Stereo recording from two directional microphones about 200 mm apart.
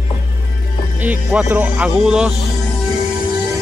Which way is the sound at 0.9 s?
10° right (ahead or behind).